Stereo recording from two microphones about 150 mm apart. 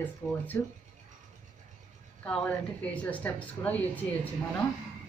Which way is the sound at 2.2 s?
10° left (ahead or behind).